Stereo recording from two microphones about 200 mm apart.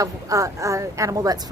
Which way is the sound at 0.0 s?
15° right (ahead or behind).